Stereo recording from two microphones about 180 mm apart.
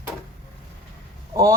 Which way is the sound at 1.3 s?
20° right (ahead or behind).